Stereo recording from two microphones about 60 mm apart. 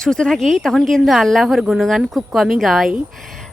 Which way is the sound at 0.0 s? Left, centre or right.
Centre.